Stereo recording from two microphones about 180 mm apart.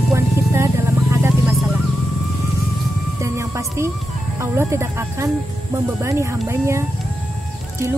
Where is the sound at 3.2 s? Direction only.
15° right (ahead or behind).